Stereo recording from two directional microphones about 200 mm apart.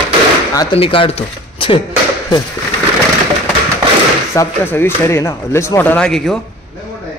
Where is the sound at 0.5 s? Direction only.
25° left (ahead or behind).